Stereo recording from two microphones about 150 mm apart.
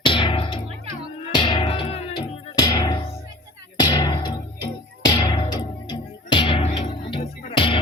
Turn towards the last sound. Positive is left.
turn(degrees=35)  # may be behind; listen again after turning